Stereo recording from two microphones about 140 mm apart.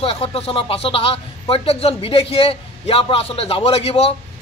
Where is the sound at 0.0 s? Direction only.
45° left (ahead or behind).